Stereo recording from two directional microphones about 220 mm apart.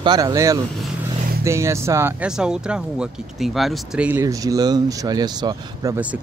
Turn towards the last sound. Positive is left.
turn(degrees=-10)  # may be behind; listen again after turning